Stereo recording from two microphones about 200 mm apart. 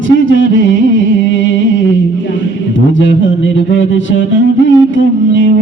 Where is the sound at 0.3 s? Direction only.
70° left (ahead or behind).